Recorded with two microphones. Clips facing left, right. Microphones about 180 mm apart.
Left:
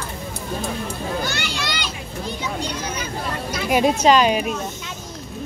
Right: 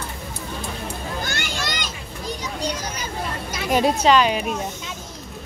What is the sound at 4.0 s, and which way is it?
Speech, 40° left (ahead or behind).